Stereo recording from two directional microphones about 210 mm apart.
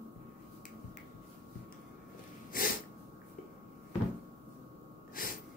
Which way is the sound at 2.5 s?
40° left (ahead or behind).